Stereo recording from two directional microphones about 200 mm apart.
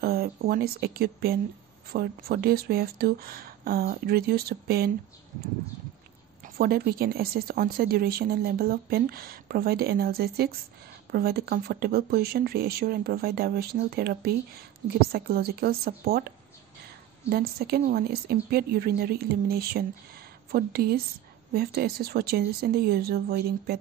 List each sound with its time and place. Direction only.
0.0 s speech: 50° right (ahead or behind)
6.4 s speech: 50° right (ahead or behind)